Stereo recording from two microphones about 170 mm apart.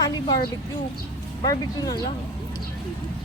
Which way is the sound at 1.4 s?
20° left (ahead or behind).